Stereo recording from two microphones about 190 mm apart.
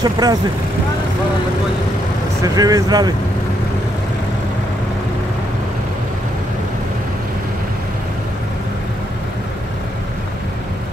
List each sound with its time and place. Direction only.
0.0 s speech: 20° right (ahead or behind)
2.4 s speech: 20° right (ahead or behind)